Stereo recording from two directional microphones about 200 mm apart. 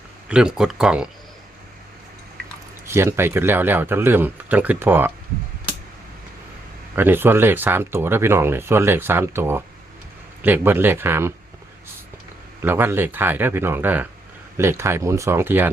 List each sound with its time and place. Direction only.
0.3 s speech: 5° right (ahead or behind)
2.8 s speech: 15° right (ahead or behind)
6.9 s speech: 10° right (ahead or behind)
12.6 s speech: 10° right (ahead or behind)